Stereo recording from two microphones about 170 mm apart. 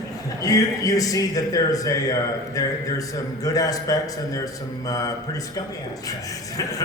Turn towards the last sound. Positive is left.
turn(degrees=20)  # may be behind; listen again after turning